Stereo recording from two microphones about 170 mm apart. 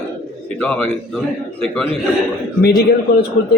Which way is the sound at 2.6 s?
70° left (ahead or behind).